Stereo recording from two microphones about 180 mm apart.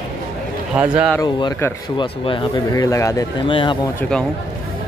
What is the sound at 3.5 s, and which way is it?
Speech, 30° left (ahead or behind).